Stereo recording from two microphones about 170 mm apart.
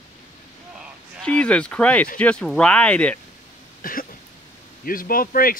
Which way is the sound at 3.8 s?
55° left (ahead or behind).